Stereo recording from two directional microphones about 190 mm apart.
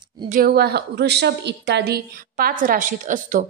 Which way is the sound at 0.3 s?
50° right (ahead or behind).